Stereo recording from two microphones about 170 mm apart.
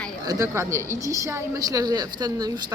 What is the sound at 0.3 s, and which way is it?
A woman's voice, 20° right (ahead or behind).